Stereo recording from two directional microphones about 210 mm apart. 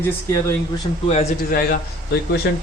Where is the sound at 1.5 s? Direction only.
45° left (ahead or behind).